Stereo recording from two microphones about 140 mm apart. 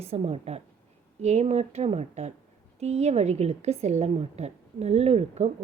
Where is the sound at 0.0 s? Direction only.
45° right (ahead or behind).